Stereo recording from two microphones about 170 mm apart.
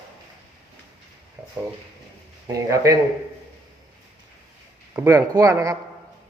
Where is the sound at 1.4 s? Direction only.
10° right (ahead or behind).